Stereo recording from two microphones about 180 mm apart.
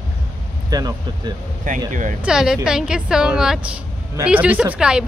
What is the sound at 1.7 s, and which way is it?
Speech, 45° right (ahead or behind).